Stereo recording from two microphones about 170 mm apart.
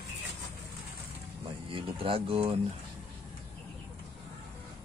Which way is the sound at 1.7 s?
35° right (ahead or behind).